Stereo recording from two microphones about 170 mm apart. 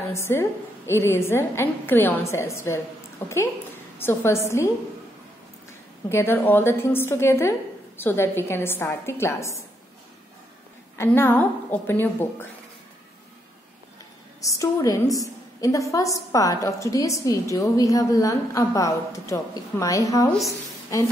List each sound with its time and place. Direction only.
0.1 s a woman's voice: 15° left (ahead or behind)
6.0 s a woman's voice: 15° left (ahead or behind)
11.0 s a woman's voice: 15° left (ahead or behind)
14.4 s a woman's voice: 20° left (ahead or behind)